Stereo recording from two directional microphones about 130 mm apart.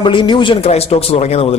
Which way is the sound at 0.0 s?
35° left (ahead or behind).